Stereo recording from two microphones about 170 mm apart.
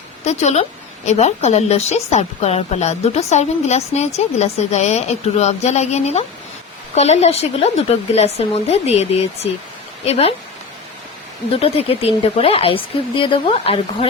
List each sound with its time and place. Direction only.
0.3 s a woman's voice: 40° left (ahead or behind)
11.5 s a woman's voice: 35° left (ahead or behind)